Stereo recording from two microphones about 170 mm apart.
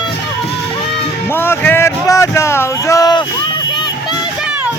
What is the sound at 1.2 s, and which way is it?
Music, 15° left (ahead or behind).